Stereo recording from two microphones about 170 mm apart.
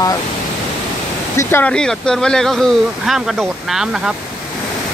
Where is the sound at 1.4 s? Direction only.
10° left (ahead or behind); by 4.1 s 5° right (ahead or behind).